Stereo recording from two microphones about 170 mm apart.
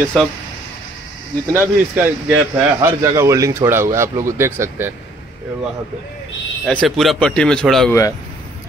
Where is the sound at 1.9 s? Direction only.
10° right (ahead or behind).